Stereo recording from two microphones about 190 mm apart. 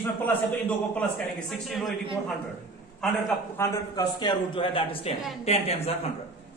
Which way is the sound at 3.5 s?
15° left (ahead or behind).